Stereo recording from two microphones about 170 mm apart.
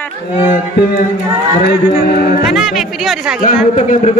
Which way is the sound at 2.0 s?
65° left (ahead or behind).